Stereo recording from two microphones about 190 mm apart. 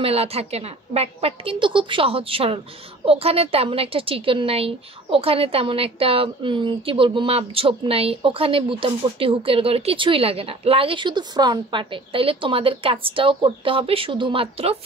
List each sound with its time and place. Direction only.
0.0 s a woman's voice: 30° right (ahead or behind)